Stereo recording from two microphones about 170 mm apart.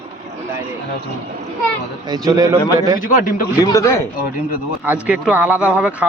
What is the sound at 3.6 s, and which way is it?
Speech, 20° left (ahead or behind).